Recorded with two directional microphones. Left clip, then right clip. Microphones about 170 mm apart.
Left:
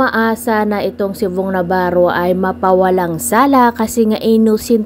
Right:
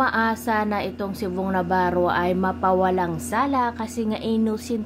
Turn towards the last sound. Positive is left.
turn(degrees=35)  # may be behind; listen again after turning